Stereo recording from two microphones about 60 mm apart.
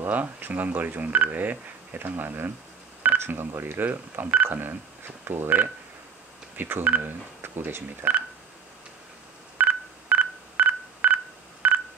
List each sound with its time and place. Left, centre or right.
0.0 s speech: right
9.6 s telephone dialing: right